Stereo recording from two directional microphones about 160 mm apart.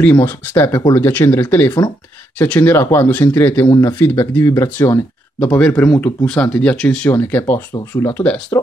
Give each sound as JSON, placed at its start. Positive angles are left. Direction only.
{"t": 0.0, "sound": "speech", "side_deg": 10}